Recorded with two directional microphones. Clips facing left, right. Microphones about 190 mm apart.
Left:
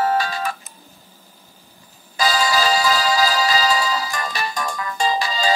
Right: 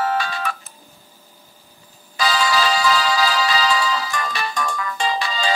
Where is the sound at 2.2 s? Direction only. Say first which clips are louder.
Even; 40° left (ahead or behind).